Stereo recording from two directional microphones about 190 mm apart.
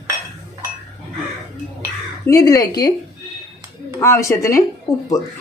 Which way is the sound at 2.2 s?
20° left (ahead or behind).